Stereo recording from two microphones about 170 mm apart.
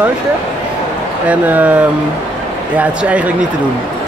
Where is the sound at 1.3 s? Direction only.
10° right (ahead or behind).